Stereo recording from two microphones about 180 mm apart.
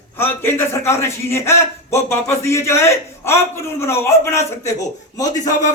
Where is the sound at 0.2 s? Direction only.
15° left (ahead or behind).